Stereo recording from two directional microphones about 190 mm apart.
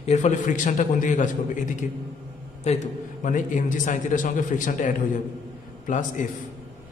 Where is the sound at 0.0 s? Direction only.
35° left (ahead or behind).